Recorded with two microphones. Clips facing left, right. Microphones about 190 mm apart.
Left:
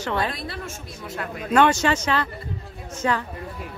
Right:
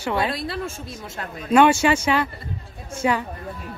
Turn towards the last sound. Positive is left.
turn(degrees=-10)  # may be behind; listen again after turning